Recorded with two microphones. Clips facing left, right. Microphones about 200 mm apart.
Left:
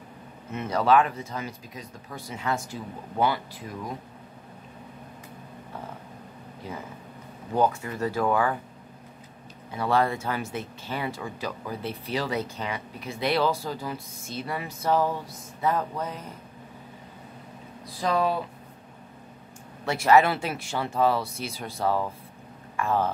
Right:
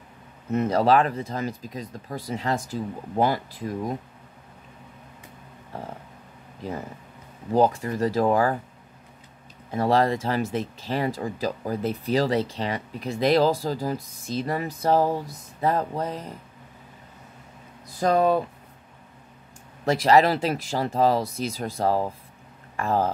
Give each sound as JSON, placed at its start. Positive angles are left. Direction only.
{"t": 0.5, "sound": "speech", "side_deg": -40}
{"t": 7.5, "sound": "speech", "side_deg": -35}
{"t": 9.7, "sound": "speech", "side_deg": -40}
{"t": 18.0, "sound": "speech", "side_deg": -45}
{"t": 19.8, "sound": "speech", "side_deg": -35}